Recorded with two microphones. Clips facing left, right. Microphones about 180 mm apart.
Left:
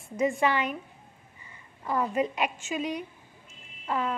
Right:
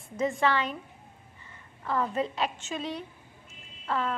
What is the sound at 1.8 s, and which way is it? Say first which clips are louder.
Speech: left 2 dB; 15° left (ahead or behind).